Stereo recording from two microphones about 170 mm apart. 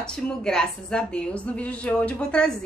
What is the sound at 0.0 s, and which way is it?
A woman's voice, 5° left (ahead or behind).